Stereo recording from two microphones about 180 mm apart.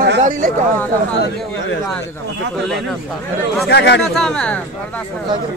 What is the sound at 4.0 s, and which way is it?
Speech, centre (ahead or behind).